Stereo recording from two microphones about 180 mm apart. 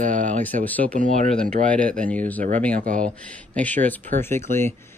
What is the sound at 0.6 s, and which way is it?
Speech, 10° left (ahead or behind).